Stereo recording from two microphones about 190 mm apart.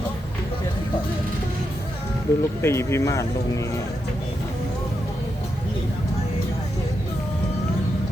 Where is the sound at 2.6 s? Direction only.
15° left (ahead or behind).